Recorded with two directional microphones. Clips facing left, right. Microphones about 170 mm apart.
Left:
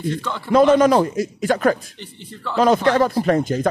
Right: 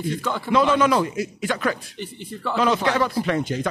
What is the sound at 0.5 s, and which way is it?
Speech, 45° left (ahead or behind).